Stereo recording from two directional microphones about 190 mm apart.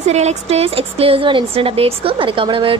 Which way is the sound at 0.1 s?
35° right (ahead or behind).